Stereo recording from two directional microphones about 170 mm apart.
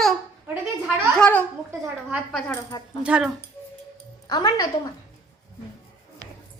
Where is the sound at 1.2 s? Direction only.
10° left (ahead or behind).